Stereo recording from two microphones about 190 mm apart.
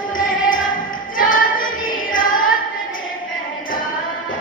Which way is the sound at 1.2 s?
45° left (ahead or behind).